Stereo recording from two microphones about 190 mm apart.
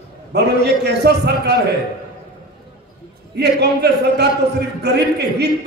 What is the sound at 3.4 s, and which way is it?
A man's voice, 60° right (ahead or behind).